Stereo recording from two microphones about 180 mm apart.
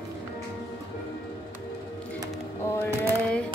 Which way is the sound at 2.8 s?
10° left (ahead or behind).